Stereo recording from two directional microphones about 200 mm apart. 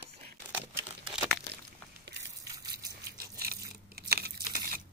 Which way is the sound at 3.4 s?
50° right (ahead or behind).